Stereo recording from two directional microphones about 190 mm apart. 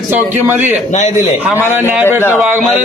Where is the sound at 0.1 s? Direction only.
10° right (ahead or behind).